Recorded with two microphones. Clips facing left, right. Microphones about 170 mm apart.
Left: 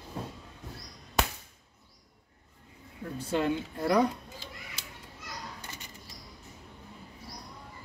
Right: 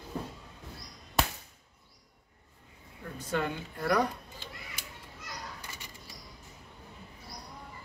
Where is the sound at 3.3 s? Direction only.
25° left (ahead or behind).